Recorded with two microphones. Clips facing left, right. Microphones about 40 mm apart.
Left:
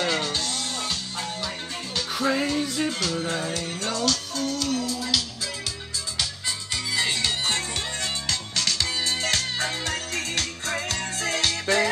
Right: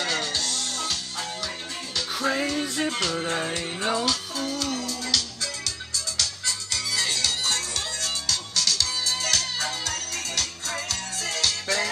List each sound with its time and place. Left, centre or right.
0.0 s music: left
2.1 s music: centre
2.9 s music: right
3.3 s music: right
3.9 s music: centre
6.1 s music: centre